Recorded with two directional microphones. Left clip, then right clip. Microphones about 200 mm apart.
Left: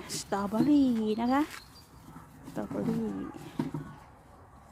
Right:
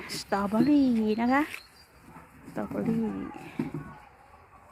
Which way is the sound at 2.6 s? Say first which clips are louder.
Right 2 dB; centre (ahead or behind).